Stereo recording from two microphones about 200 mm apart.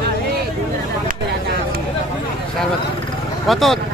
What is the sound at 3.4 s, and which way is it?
Speech, centre (ahead or behind).